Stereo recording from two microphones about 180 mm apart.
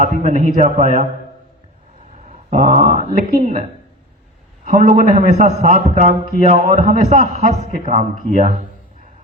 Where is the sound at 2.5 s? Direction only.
50° right (ahead or behind).